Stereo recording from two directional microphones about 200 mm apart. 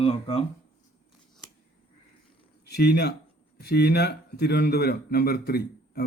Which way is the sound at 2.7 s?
55° left (ahead or behind).